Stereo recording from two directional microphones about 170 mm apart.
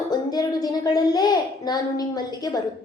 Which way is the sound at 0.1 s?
25° left (ahead or behind).